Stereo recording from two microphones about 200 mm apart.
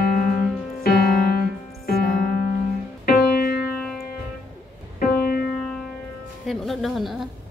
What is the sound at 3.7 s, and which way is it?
Music, centre (ahead or behind).